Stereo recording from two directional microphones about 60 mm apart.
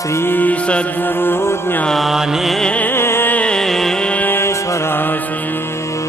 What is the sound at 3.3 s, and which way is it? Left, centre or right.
Music, centre.